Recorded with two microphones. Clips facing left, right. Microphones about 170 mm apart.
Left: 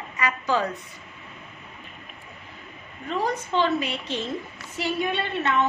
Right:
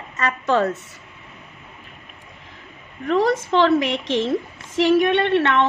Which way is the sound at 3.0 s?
85° right.